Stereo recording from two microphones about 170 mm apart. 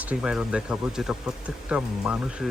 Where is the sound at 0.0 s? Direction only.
5° right (ahead or behind).